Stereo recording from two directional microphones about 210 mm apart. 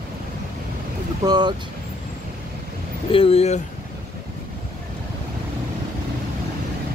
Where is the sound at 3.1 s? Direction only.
30° left (ahead or behind).